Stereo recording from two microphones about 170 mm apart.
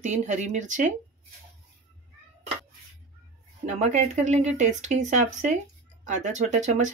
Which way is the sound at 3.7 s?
40° right (ahead or behind).